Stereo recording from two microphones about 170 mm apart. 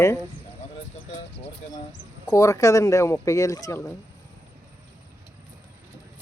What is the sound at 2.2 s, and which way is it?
Speech, 20° left (ahead or behind).